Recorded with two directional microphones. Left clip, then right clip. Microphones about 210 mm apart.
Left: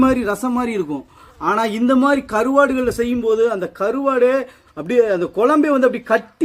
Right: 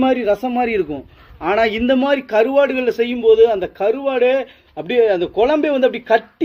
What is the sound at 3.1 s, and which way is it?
Speech, 25° left (ahead or behind).